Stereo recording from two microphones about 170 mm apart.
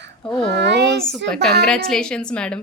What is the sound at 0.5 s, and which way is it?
Speech, 90° right.